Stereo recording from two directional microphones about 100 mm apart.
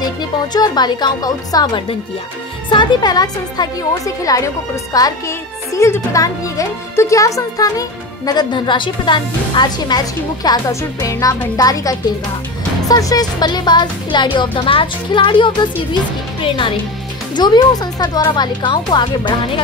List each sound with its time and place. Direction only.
0.0 s speech: 45° left (ahead or behind)
8.3 s speech: 45° left (ahead or behind)
10.7 s speech: 30° left (ahead or behind); by 16.7 s 55° left (ahead or behind)
17.4 s speech: 45° left (ahead or behind)